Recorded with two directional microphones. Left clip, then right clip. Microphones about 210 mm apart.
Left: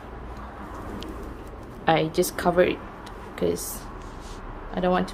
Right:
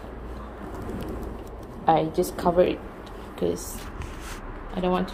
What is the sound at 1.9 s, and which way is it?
Speech, 25° left (ahead or behind).